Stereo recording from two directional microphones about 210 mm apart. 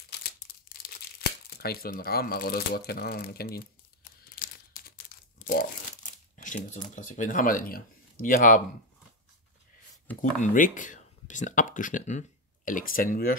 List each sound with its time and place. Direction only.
0.8 s speech: 50° left (ahead or behind)
4.4 s crumpling: 45° left (ahead or behind)
6.3 s speech: 35° left (ahead or behind)
10.4 s speech: 40° left (ahead or behind)